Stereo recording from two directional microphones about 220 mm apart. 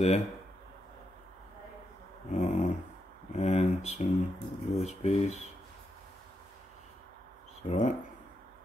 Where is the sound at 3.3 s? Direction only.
30° left (ahead or behind).